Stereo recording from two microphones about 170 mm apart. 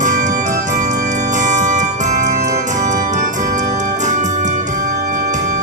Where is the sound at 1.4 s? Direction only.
45° right (ahead or behind).